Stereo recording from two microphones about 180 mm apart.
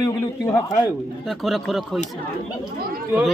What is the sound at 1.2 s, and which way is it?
Speech, centre (ahead or behind).